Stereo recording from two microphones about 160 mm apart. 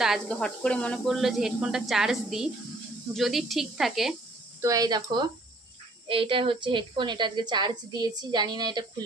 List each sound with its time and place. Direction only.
0.0 s speech: centre (ahead or behind)
4.6 s a woman's voice: 20° right (ahead or behind)